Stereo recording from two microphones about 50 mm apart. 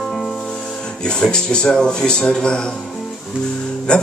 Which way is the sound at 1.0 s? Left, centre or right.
Centre.